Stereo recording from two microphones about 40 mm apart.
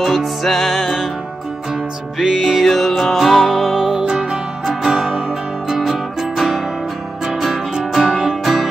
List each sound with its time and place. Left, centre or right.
0.0 s music: centre
2.1 s music: centre